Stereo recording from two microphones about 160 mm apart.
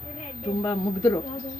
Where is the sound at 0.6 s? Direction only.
25° left (ahead or behind).